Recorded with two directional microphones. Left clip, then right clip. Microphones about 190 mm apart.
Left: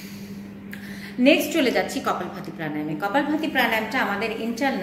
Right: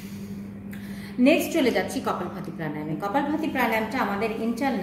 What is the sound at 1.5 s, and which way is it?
A woman's voice, 5° right (ahead or behind).